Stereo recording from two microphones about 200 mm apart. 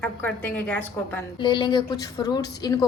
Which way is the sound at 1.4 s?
25° left (ahead or behind).